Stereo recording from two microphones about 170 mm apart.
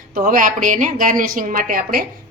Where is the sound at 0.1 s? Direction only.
50° right (ahead or behind).